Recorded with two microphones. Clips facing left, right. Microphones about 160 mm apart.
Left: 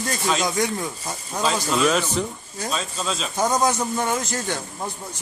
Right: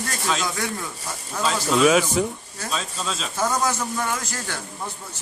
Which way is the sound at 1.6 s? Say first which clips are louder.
Right 6 dB; 5° right (ahead or behind).